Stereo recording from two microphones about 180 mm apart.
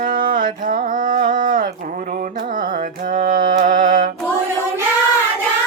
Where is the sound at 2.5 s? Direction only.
50° right (ahead or behind).